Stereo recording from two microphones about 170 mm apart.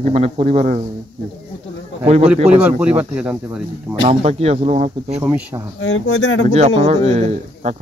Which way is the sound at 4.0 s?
35° right (ahead or behind).